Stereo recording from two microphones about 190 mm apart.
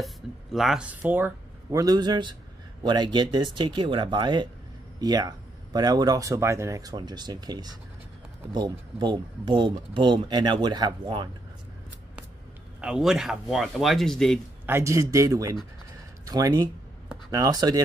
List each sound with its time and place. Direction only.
0.0 s speech: centre (ahead or behind); by 11.2 s 25° right (ahead or behind)
12.8 s speech: 5° right (ahead or behind)
14.7 s speech: 15° right (ahead or behind)